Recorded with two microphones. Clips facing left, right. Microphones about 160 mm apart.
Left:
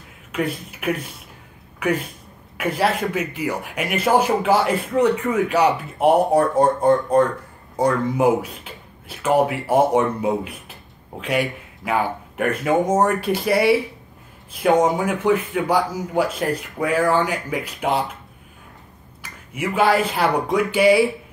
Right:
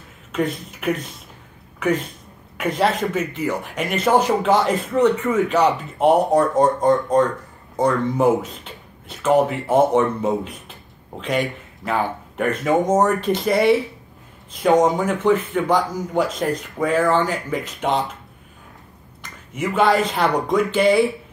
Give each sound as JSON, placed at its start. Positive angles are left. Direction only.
{"t": 0.3, "sound": "speech", "side_deg": 5}
{"t": 14.8, "sound": "speech", "side_deg": 10}
{"t": 19.2, "sound": "speech", "side_deg": 10}